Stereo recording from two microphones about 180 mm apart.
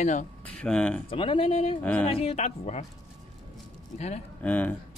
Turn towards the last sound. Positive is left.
turn(degrees=10)  # may be behind; listen again after turning